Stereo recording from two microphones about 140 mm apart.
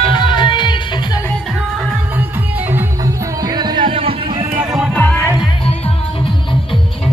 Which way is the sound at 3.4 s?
30° right (ahead or behind).